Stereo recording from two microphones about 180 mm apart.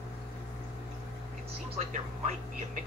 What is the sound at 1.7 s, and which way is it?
Music, 40° right (ahead or behind).